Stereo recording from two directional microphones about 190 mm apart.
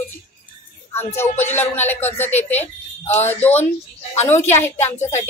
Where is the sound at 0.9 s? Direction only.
10° left (ahead or behind).